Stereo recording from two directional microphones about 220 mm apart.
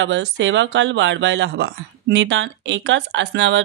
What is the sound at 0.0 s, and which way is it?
Speech, 55° right (ahead or behind).